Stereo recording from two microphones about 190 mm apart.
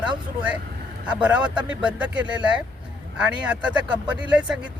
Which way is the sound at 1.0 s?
5° right (ahead or behind).